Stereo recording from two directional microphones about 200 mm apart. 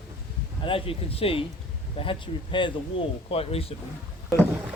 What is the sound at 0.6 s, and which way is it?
Speech, 25° left (ahead or behind).